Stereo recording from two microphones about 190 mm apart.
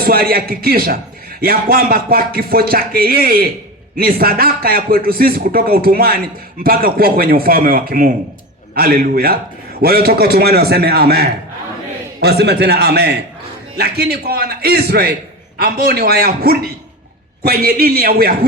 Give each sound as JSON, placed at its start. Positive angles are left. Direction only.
{"t": 0.0, "sound": "a man's voice", "side_deg": -50}